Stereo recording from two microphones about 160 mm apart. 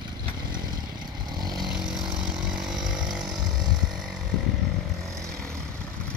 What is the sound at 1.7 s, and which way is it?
Chainsaw, 5° right (ahead or behind).